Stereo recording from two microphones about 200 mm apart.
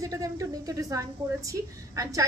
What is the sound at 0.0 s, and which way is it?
A woman's voice, 15° right (ahead or behind).